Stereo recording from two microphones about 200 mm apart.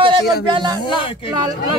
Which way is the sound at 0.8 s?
25° left (ahead or behind).